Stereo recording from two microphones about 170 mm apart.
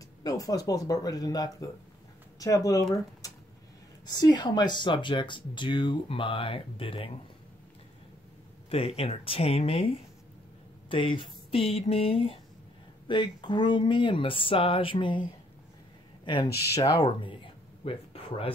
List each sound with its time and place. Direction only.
0.2 s speech: 20° left (ahead or behind)
8.6 s speech: 35° left (ahead or behind)
16.7 s speech: 20° left (ahead or behind)